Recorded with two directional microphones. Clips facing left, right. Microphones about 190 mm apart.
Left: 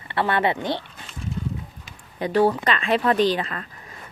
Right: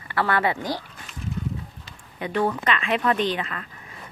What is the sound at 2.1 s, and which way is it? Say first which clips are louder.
A woman's voice: left 5 dB; 35° left (ahead or behind).